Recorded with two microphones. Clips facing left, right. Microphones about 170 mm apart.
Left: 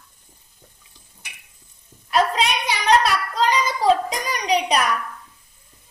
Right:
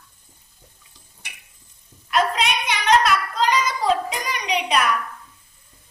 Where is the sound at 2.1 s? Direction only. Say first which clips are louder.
Left 1 dB; 35° left (ahead or behind).